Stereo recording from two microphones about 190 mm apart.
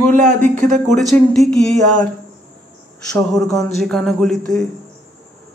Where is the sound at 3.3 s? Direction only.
Centre (ahead or behind).